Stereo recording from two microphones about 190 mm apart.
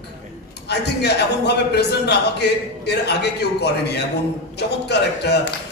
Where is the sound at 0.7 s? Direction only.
60° left (ahead or behind).